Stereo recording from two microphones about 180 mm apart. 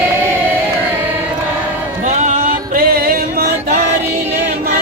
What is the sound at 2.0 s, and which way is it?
Music, 40° right (ahead or behind).